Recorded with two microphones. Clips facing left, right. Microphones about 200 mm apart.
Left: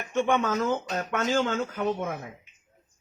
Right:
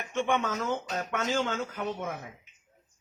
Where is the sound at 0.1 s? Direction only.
50° left (ahead or behind).